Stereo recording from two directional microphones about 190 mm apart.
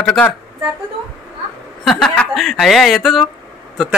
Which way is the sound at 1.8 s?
Centre (ahead or behind).